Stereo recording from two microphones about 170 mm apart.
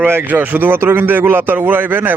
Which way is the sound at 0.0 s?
10° right (ahead or behind).